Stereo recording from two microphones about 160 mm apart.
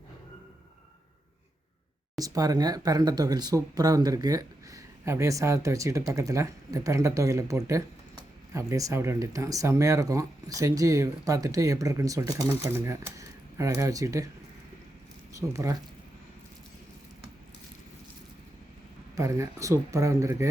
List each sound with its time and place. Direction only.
2.1 s speech: 20° right (ahead or behind)
15.3 s speech: 20° right (ahead or behind)
19.1 s speech: 20° right (ahead or behind)